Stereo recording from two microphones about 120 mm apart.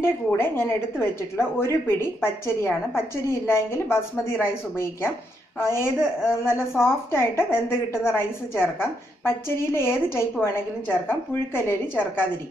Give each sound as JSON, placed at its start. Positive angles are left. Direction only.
{"t": 0.0, "sound": "a woman's voice", "side_deg": 20}